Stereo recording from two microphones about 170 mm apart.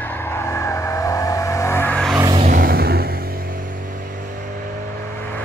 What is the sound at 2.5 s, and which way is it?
Music, 65° right (ahead or behind).